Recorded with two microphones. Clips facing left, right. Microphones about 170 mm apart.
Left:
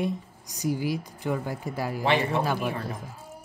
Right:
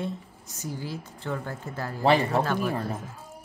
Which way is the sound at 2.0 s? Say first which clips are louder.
Right 3 dB; 40° right (ahead or behind).